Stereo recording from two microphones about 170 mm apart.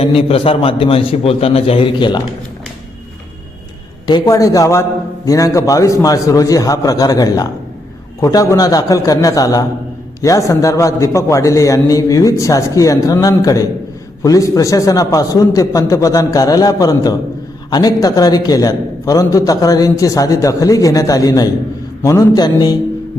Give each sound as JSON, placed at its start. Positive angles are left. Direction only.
{"t": 0.0, "sound": "a man's voice", "side_deg": 35}
{"t": 4.0, "sound": "a man's voice", "side_deg": 25}